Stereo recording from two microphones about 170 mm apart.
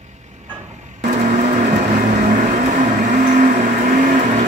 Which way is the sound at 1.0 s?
45° right (ahead or behind).